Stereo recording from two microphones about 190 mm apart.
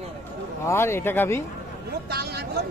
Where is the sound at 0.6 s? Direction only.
15° left (ahead or behind).